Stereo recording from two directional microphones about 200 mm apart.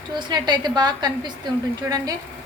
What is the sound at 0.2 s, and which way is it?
A woman's voice, 20° right (ahead or behind).